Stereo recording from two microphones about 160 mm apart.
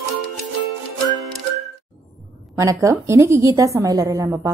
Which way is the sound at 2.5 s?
20° right (ahead or behind).